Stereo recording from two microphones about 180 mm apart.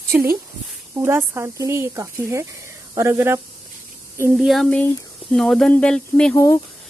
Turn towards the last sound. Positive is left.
turn(degrees=5)  # may be behind; listen again after turning